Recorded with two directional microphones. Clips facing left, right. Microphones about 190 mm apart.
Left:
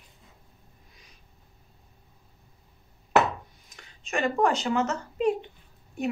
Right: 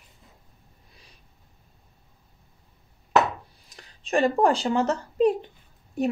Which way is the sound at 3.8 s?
35° right (ahead or behind).